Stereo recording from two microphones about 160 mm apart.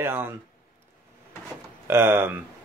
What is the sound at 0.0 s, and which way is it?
Speech, 15° right (ahead or behind).